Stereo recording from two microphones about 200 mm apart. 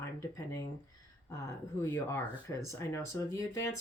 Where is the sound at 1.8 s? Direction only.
15° left (ahead or behind).